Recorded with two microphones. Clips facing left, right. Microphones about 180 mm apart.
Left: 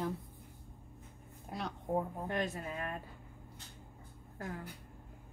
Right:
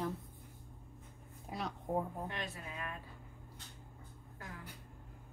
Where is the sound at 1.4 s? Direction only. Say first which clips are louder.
Left 1 dB; centre (ahead or behind).